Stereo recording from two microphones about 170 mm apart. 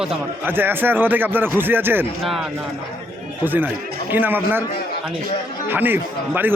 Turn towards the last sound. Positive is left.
turn(degrees=-10)  # may be behind; listen again after turning